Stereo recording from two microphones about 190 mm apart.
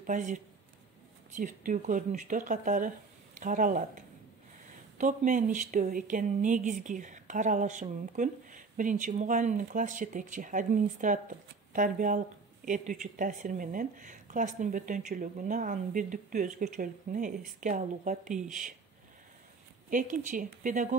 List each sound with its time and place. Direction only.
0.0 s speech: 40° right (ahead or behind)
19.9 s speech: 45° right (ahead or behind)